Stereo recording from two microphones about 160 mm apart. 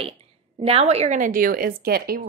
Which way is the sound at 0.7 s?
40° right (ahead or behind).